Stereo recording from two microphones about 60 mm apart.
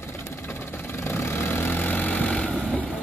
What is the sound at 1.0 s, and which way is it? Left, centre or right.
Vehicle, left.